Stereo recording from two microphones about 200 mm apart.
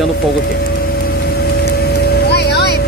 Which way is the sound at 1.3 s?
50° left (ahead or behind).